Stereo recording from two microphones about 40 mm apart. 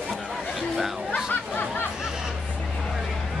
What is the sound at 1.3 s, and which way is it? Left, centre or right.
Chatter, left.